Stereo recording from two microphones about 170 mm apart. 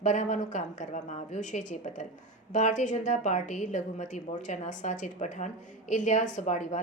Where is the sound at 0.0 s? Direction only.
45° left (ahead or behind).